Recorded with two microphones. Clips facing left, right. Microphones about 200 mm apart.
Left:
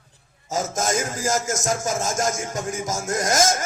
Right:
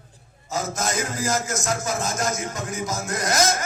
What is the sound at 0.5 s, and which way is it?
Speech, 45° left (ahead or behind).